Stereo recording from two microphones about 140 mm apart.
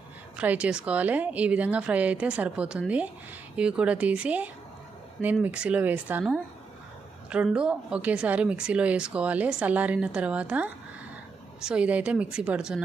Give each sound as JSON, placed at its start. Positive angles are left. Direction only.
{"t": 0.3, "sound": "a woman's voice", "side_deg": -10}
{"t": 7.3, "sound": "a woman's voice", "side_deg": -5}